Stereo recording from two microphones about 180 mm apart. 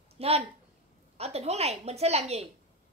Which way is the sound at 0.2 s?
35° right (ahead or behind).